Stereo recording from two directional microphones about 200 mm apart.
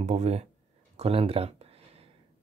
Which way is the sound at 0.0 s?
35° right (ahead or behind).